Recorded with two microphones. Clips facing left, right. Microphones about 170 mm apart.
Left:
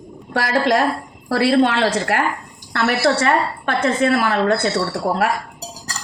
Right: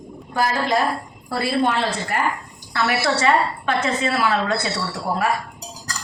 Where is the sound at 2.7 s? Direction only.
55° left (ahead or behind).